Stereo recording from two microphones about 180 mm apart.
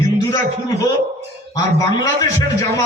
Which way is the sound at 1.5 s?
20° left (ahead or behind).